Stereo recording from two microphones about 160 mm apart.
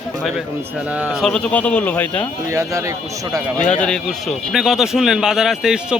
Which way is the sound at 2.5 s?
20° right (ahead or behind).